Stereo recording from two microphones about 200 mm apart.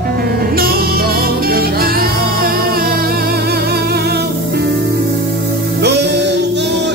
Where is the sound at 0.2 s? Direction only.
50° right (ahead or behind).